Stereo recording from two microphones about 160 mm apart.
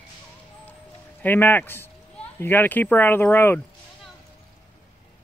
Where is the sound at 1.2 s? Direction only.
10° left (ahead or behind).